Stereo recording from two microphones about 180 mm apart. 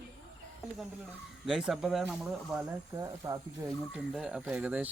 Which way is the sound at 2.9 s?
20° right (ahead or behind).